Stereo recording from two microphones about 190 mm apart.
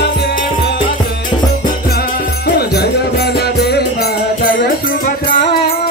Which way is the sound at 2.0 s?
55° left (ahead or behind).